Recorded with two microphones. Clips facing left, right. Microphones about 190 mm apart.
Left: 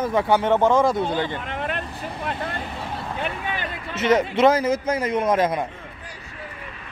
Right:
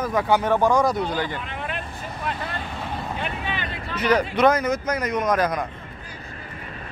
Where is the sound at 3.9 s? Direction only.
25° left (ahead or behind).